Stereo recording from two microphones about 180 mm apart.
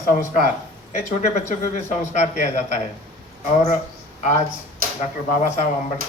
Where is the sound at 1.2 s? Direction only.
40° left (ahead or behind).